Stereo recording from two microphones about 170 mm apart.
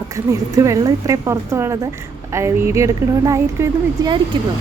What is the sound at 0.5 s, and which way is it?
A woman's voice, 20° right (ahead or behind).